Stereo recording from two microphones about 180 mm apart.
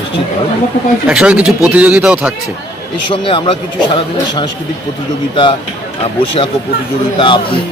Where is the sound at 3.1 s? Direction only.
30° left (ahead or behind).